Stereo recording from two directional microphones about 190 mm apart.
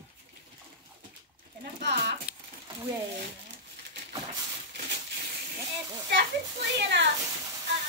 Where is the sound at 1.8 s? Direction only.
65° right (ahead or behind).